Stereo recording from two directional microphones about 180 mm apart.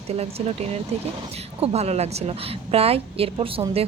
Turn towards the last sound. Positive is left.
turn(degrees=-30)  # may be behind; listen again after turning